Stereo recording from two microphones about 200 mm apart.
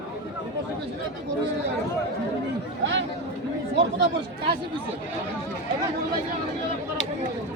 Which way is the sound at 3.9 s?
60° right (ahead or behind).